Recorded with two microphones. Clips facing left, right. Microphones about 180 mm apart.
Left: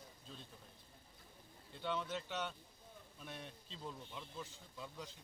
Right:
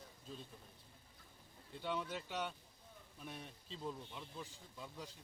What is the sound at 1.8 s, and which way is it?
Speech, 5° right (ahead or behind).